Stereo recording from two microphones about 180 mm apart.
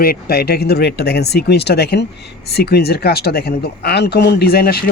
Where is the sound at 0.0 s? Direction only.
55° left (ahead or behind).